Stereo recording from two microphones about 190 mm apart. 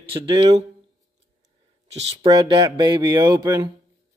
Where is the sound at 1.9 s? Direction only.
25° right (ahead or behind).